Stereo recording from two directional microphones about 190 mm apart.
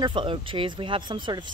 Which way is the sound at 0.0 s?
25° right (ahead or behind).